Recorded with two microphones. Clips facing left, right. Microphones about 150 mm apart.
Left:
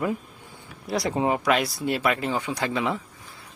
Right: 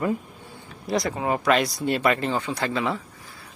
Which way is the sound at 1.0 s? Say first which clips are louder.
Left 3 dB; 25° left (ahead or behind).